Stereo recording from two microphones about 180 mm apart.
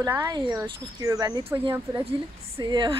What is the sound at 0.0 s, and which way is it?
Speech, 15° right (ahead or behind).